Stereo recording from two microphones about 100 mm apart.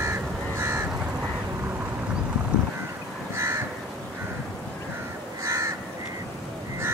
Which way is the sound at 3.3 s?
25° right (ahead or behind).